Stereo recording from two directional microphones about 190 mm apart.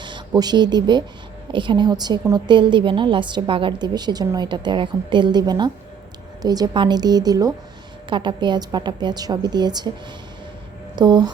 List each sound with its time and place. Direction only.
0.0 s a woman's voice: 20° right (ahead or behind)
10.9 s a woman's voice: 20° right (ahead or behind)